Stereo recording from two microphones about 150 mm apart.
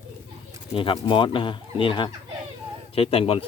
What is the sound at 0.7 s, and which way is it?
Speech, 35° left (ahead or behind).